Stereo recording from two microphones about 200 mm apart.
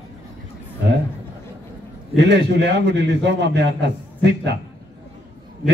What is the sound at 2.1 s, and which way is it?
A man's voice, 60° right (ahead or behind).